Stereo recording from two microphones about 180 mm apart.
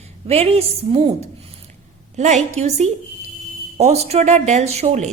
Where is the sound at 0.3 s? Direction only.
35° right (ahead or behind).